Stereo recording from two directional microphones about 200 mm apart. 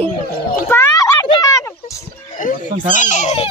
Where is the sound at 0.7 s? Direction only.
10° left (ahead or behind).